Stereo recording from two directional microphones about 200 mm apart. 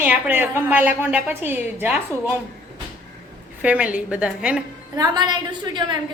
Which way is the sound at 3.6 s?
5° right (ahead or behind).